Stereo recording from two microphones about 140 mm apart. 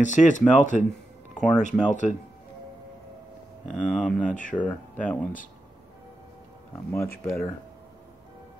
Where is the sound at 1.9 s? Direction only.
60° left (ahead or behind).